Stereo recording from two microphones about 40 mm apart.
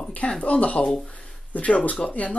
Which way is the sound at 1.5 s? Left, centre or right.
Left.